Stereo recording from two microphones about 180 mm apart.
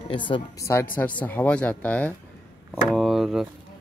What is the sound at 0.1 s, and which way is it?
Speech, 25° left (ahead or behind).